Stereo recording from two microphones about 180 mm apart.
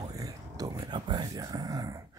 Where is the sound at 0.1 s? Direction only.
20° right (ahead or behind).